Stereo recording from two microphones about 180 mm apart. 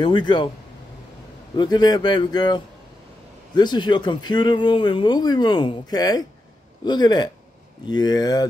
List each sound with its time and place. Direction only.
0.0 s speech: 25° left (ahead or behind)
1.6 s speech: 25° left (ahead or behind)